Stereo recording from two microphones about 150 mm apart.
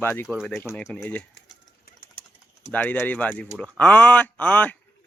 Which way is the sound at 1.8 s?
65° left (ahead or behind).